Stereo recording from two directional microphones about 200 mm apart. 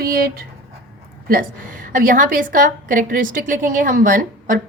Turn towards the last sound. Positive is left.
turn(degrees=-40)  # may be behind; listen again after turning